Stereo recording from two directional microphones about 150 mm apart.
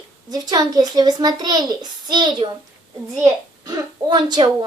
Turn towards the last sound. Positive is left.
turn(degrees=-30)  # may be behind; listen again after turning